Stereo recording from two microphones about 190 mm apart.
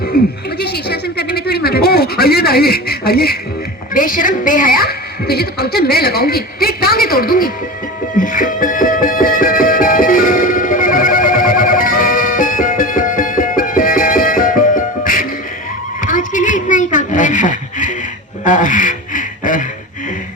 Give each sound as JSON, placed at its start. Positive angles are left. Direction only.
{"t": 0.1, "sound": "a woman's voice", "side_deg": 55}
{"t": 8.2, "sound": "music", "side_deg": 45}
{"t": 16.0, "sound": "a sound", "side_deg": 45}